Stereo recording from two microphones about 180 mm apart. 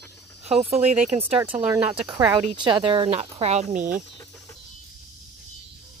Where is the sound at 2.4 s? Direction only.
30° right (ahead or behind); by 4.0 s 45° right (ahead or behind).